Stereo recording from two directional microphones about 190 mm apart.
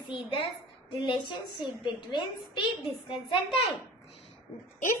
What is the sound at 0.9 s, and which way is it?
A woman's voice, 25° left (ahead or behind).